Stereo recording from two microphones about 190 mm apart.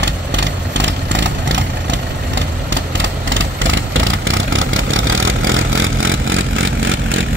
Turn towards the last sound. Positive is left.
turn(degrees=-90)